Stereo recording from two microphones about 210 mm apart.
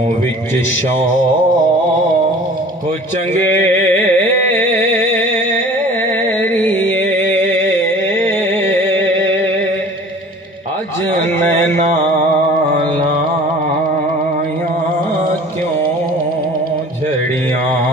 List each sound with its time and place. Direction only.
3.8 s carnatic music: 10° left (ahead or behind)
4.6 s music: 65° left (ahead or behind)
6.5 s music: 10° left (ahead or behind)
8.9 s music: 10° left (ahead or behind)
11.5 s mantra: 35° right (ahead or behind)